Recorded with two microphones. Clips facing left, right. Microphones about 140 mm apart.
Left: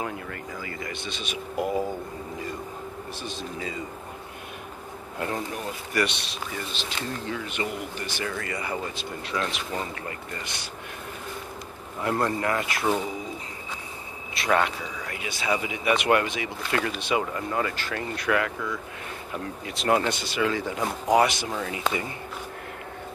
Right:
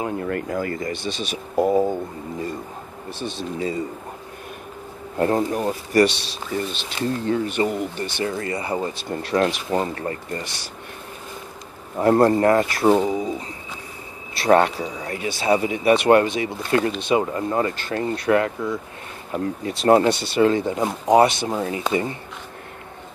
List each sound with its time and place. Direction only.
0.2 s speech: 55° right (ahead or behind); by 2.0 s 30° right (ahead or behind)
3.2 s speech: 35° right (ahead or behind)
5.2 s speech: 40° right (ahead or behind)
12.0 s speech: 40° right (ahead or behind)
14.3 s speech: 35° right (ahead or behind)